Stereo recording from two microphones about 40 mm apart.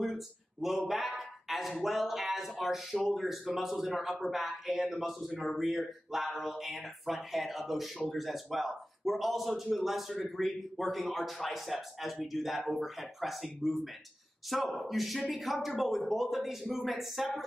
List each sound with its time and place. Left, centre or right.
0.0 s speech: centre
14.8 s speech: centre